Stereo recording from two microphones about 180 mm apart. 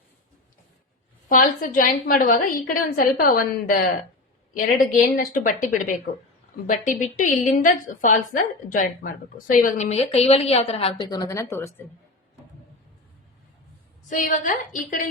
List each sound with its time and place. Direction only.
1.3 s a woman's voice: 50° left (ahead or behind); by 10.9 s 35° left (ahead or behind)
11.1 s a woman's voice: 20° left (ahead or behind)
14.1 s a woman's voice: 45° left (ahead or behind)